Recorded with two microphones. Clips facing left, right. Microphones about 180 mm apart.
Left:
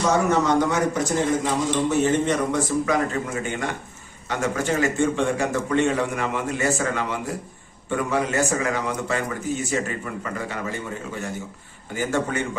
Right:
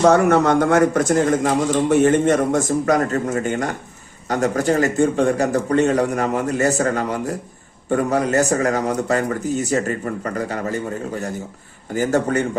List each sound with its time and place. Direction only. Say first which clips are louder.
0.0 s a man's voice: right 6 dB; 60° right (ahead or behind); by 12.5 s 40° right (ahead or behind)